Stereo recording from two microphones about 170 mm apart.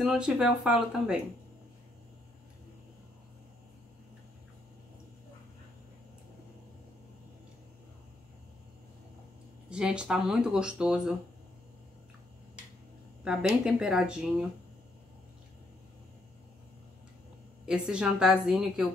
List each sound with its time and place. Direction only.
0.0 s speech: 5° right (ahead or behind)
9.7 s speech: 5° right (ahead or behind)
13.2 s speech: 5° right (ahead or behind)
17.6 s speech: 5° right (ahead or behind)